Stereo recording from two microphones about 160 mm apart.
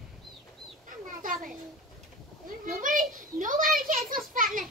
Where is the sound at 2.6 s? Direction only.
55° right (ahead or behind).